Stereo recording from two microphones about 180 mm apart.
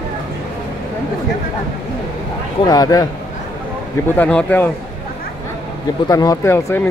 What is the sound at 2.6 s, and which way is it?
Speech, 20° left (ahead or behind).